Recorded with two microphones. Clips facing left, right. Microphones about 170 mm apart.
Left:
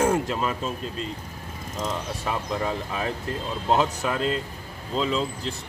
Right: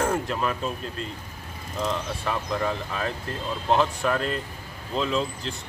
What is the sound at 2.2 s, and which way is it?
Speech, 15° left (ahead or behind).